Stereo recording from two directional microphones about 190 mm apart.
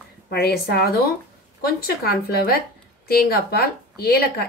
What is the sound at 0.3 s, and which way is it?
A woman's voice, 55° left (ahead or behind).